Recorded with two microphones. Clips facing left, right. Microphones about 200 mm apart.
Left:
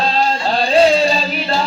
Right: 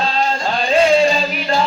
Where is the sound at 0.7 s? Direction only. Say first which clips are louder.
Even; 35° left (ahead or behind).